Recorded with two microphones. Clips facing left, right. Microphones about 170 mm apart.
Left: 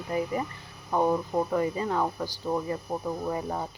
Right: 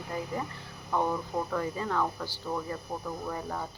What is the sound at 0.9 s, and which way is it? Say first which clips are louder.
Speech: left 5 dB; 15° left (ahead or behind).